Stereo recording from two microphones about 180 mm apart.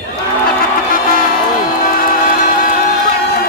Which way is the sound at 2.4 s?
50° left (ahead or behind).